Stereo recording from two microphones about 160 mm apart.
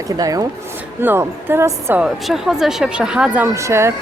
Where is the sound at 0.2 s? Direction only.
20° right (ahead or behind).